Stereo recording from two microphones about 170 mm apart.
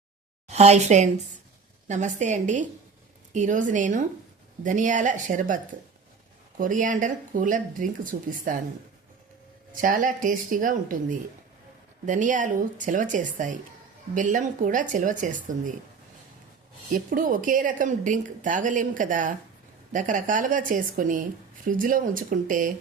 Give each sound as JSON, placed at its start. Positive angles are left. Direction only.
{"t": 0.4, "sound": "a woman's voice", "side_deg": -40}
{"t": 6.6, "sound": "a woman's voice", "side_deg": -50}
{"t": 9.8, "sound": "a woman's voice", "side_deg": -50}
{"t": 16.9, "sound": "a woman's voice", "side_deg": -55}